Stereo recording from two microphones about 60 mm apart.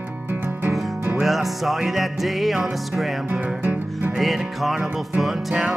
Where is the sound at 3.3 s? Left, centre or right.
Right.